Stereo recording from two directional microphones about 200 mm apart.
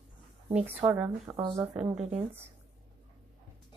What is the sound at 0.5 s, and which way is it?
Speech, 5° right (ahead or behind).